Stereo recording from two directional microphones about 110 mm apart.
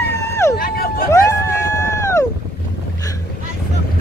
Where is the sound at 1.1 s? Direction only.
30° left (ahead or behind).